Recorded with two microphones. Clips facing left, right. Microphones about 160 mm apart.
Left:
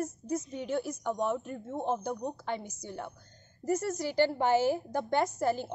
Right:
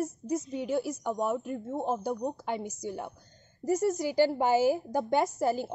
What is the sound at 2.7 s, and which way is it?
Speech, 45° right (ahead or behind).